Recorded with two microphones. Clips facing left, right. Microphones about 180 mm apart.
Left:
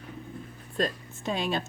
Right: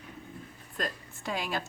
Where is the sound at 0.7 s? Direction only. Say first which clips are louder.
Left 7 dB; 25° left (ahead or behind).